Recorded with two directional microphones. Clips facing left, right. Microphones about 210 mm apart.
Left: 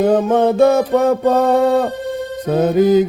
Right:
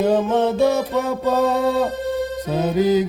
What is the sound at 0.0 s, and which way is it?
Mantra, 50° left (ahead or behind).